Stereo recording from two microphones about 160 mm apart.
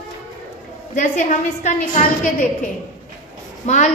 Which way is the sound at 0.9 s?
50° left (ahead or behind).